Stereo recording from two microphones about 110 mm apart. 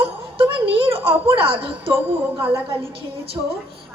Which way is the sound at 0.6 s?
55° right (ahead or behind).